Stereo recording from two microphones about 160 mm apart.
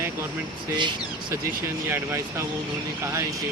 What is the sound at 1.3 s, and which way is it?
Speech, 15° right (ahead or behind).